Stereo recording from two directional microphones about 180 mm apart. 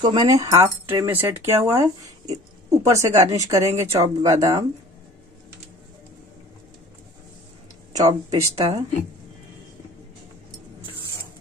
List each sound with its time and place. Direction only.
0.0 s speech: 25° right (ahead or behind)
7.9 s speech: 20° right (ahead or behind)